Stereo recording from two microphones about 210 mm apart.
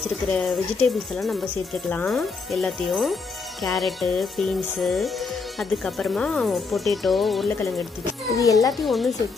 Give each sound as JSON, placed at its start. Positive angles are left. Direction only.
{"t": 0.3, "sound": "a child's voice", "side_deg": 0}
{"t": 8.7, "sound": "speech", "side_deg": 0}